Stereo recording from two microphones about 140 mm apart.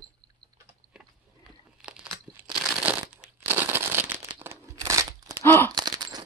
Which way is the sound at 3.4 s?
15° right (ahead or behind).